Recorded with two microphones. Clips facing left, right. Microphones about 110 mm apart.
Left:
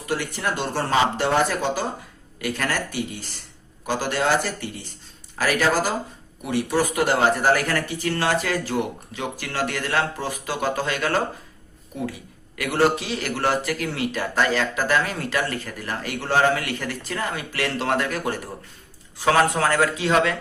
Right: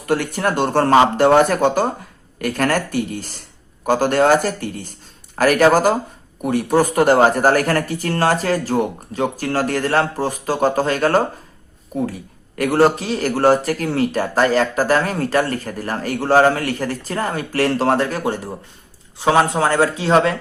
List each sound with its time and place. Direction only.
0.0 s a man's voice: 50° right (ahead or behind); by 20.3 s 35° right (ahead or behind)